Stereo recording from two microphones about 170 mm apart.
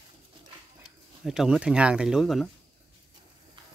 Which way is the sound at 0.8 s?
Centre (ahead or behind).